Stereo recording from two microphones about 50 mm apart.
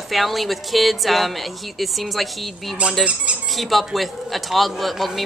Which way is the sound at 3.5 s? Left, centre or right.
Centre.